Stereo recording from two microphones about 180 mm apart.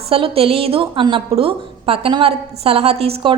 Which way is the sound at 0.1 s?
30° right (ahead or behind).